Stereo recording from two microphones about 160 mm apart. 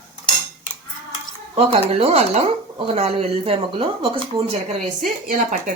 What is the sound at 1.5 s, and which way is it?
Speech, 40° right (ahead or behind).